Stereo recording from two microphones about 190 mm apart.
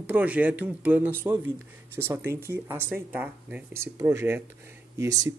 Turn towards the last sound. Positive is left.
turn(degrees=-20)  # may be behind; listen again after turning